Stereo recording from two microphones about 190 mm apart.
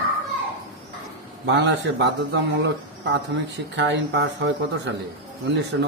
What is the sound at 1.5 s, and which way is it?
A man's voice, 70° right (ahead or behind).